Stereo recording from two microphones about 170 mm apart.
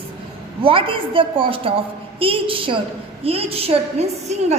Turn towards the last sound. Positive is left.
turn(degrees=-40)  # may be behind; listen again after turning